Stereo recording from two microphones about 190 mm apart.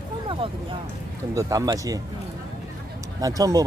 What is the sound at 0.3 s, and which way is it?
Speech, 30° right (ahead or behind).